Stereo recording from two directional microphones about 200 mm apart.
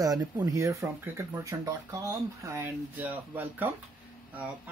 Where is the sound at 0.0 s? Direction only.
20° right (ahead or behind).